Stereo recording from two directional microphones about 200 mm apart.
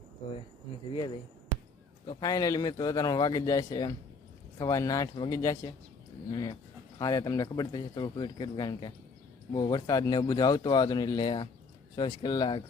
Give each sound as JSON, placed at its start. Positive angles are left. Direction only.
{"t": 2.0, "sound": "speech", "side_deg": 20}